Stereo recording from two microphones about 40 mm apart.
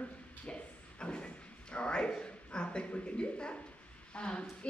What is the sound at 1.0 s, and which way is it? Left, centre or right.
Speech, left.